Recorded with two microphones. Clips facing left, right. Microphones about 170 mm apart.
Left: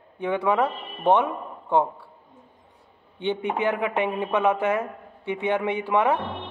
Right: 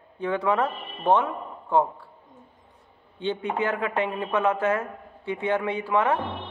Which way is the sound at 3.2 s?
15° left (ahead or behind).